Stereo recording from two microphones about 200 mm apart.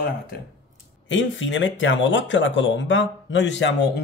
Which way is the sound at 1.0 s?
65° left (ahead or behind).